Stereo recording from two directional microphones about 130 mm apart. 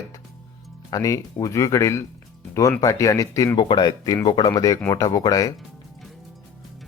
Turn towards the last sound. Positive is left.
turn(degrees=30)  # may be behind; listen again after turning